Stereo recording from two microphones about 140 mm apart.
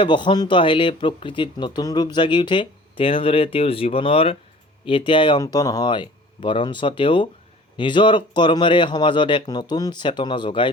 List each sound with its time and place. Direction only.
0.0 s speech: 35° left (ahead or behind)
5.4 s speech: 25° left (ahead or behind)